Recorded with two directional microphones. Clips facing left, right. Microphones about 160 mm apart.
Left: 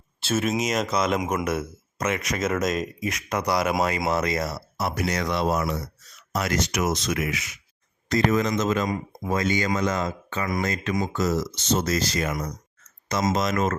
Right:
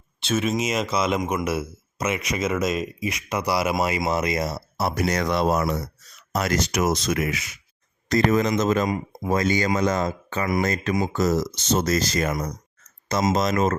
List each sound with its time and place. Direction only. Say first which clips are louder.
0.2 s speech: right 1 dB; 5° left (ahead or behind); by 4.6 s 20° right (ahead or behind)
4.8 s speech: right 3 dB; 35° right (ahead or behind)